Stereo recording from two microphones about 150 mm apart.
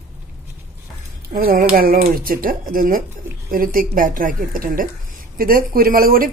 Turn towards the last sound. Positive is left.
turn(degrees=-75)  # may be behind; listen again after turning